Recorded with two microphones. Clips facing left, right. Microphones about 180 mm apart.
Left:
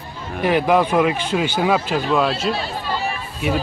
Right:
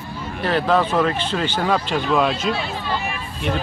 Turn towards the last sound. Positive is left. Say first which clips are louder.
# left 2 dB
turn(degrees=5)  # may be behind; listen again after turning